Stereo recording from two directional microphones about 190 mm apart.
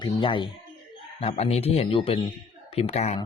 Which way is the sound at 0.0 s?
25° left (ahead or behind).